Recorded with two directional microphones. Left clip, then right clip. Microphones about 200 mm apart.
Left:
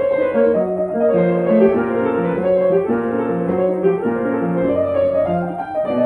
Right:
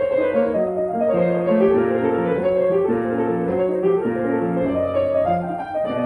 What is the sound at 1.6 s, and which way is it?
Music, 15° right (ahead or behind).